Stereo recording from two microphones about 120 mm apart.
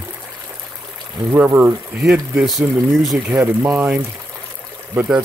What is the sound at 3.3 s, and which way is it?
Speech, 15° right (ahead or behind).